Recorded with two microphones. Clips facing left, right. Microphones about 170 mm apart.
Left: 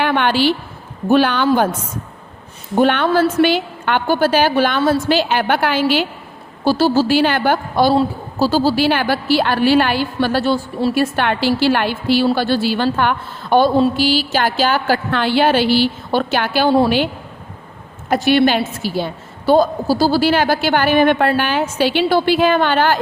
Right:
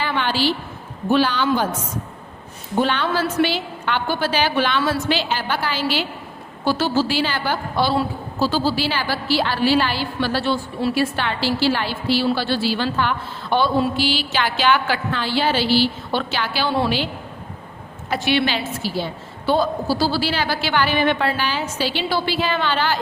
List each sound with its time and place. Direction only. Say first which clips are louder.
0.0 s a sound: left 6 dB; 60° left (ahead or behind)
1.1 s a woman's voice: left 4 dB; 55° left (ahead or behind)
2.7 s a woman's voice: left 6 dB; 55° left (ahead or behind)
5.3 s a woman's voice: left 7 dB; 60° left (ahead or behind)
6.7 s a woman's voice: left 6 dB; 35° left (ahead or behind)
10.9 s a woman's voice: left 5 dB; 55° left (ahead or behind)
15.1 s a woman's voice: left 7 dB; 60° left (ahead or behind)
18.1 s a woman's voice: left 7 dB; 45° left (ahead or behind)